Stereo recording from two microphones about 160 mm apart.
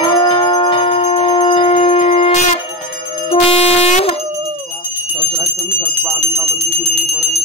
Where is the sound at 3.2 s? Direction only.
40° left (ahead or behind).